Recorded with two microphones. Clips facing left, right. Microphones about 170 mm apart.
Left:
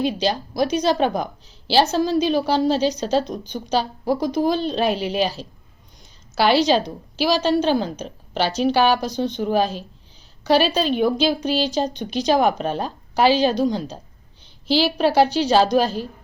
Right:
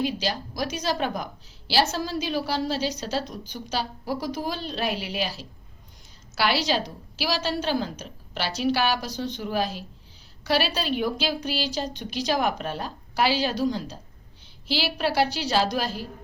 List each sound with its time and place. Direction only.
0.0 s a woman's voice: 25° left (ahead or behind)
6.4 s a woman's voice: 25° left (ahead or behind)
15.3 s a woman's voice: 20° left (ahead or behind)